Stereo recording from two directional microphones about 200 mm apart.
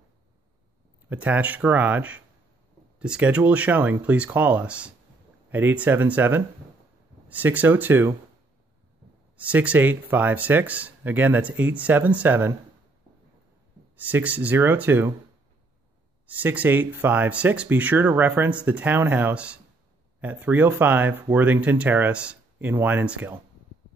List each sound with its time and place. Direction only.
1.0 s speech: 5° right (ahead or behind)
9.4 s speech: 5° right (ahead or behind)
13.9 s speech: 10° right (ahead or behind)
16.4 s speech: 10° right (ahead or behind)